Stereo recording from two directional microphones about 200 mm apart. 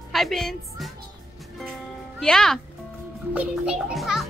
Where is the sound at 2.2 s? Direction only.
Centre (ahead or behind).